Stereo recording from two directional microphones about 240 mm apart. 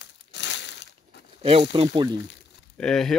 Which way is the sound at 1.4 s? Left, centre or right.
Right.